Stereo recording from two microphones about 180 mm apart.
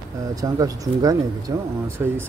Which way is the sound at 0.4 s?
20° right (ahead or behind).